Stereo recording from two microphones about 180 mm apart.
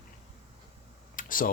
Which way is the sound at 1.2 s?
50° left (ahead or behind).